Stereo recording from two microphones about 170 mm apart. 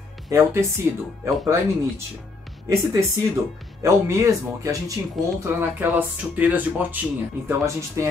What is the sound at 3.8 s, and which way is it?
Speech, 20° right (ahead or behind).